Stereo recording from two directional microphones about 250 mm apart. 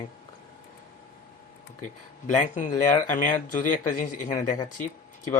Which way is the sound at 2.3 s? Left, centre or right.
Left.